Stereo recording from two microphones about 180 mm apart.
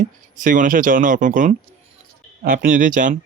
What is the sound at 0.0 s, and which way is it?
Speech, 50° right (ahead or behind).